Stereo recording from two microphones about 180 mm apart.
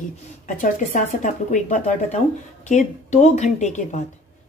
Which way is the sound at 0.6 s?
45° left (ahead or behind).